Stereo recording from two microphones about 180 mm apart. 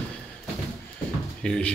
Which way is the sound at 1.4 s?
5° left (ahead or behind).